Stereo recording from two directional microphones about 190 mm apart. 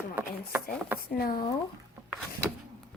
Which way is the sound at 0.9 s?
50° left (ahead or behind).